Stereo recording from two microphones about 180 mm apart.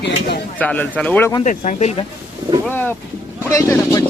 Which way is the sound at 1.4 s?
40° left (ahead or behind).